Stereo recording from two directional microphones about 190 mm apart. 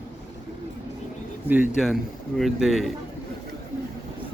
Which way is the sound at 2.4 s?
Centre (ahead or behind).